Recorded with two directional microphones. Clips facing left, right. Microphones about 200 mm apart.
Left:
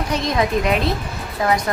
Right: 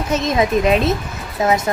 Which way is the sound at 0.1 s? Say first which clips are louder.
Right 4 dB; 20° right (ahead or behind).